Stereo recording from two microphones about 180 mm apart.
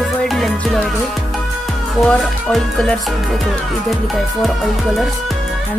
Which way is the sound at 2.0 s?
Centre (ahead or behind).